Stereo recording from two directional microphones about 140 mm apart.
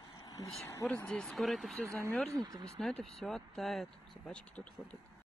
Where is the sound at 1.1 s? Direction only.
5° left (ahead or behind).